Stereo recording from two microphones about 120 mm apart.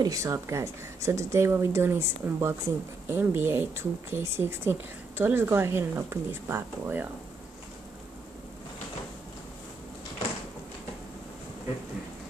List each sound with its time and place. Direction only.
0.0 s speech: 30° right (ahead or behind)